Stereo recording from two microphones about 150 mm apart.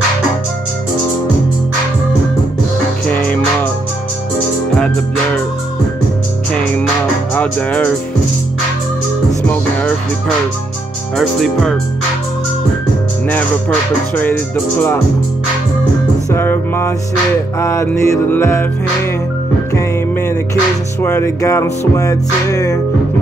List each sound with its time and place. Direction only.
7.3 s speech: 10° left (ahead or behind)
9.5 s speech: 10° left (ahead or behind)
14.1 s speech: 10° left (ahead or behind)
16.3 s speech: 15° left (ahead or behind)
17.6 s music: 20° left (ahead or behind)
19.7 s music: 15° left (ahead or behind)